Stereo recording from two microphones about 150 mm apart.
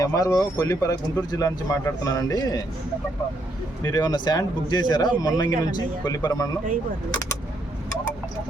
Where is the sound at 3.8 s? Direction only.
25° left (ahead or behind).